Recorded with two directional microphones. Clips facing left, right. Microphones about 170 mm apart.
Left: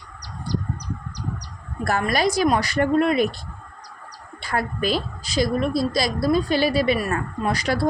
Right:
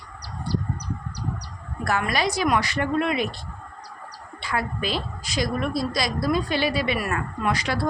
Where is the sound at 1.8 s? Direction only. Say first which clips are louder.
Left 3 dB; 40° left (ahead or behind).